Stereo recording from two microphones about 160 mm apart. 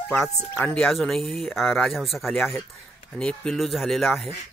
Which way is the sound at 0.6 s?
5° left (ahead or behind).